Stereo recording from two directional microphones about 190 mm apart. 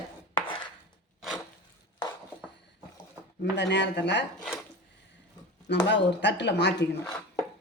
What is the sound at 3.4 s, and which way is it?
Speech, 65° left (ahead or behind).